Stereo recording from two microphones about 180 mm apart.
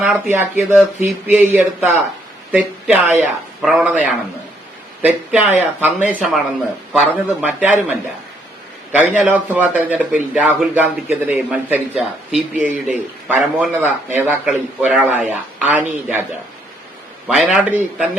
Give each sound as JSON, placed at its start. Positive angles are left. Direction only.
{"t": 0.0, "sound": "a man's voice", "side_deg": -10}
{"t": 17.2, "sound": "a man's voice", "side_deg": -5}